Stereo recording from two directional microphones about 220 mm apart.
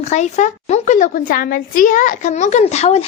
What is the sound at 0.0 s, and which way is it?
A woman's voice, 30° left (ahead or behind).